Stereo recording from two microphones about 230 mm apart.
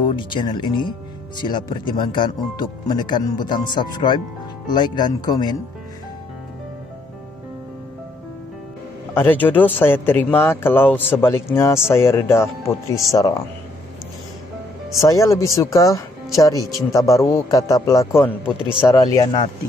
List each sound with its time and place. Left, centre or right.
0.1 s speech: left
9.1 s speech: centre
15.0 s speech: centre